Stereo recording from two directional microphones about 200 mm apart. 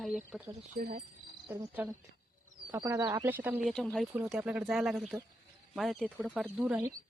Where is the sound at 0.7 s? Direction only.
45° right (ahead or behind).